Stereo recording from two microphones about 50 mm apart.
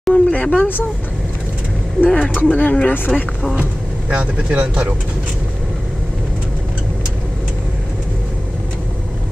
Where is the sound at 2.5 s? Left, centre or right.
Left.